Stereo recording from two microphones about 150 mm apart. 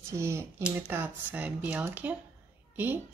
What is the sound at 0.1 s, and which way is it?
Speech, 15° right (ahead or behind).